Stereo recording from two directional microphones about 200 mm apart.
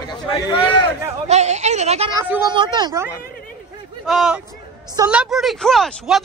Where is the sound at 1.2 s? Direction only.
35° right (ahead or behind).